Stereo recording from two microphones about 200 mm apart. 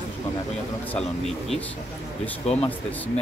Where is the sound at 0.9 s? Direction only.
Centre (ahead or behind).